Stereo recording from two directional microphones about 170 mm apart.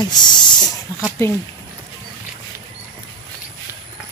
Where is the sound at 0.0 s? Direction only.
25° left (ahead or behind).